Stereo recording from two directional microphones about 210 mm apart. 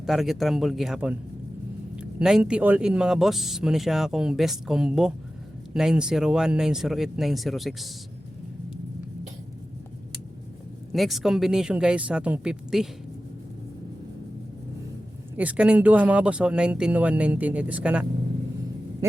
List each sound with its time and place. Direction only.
0.0 s speech: centre (ahead or behind)
10.9 s speech: centre (ahead or behind)
15.4 s speech: 5° right (ahead or behind)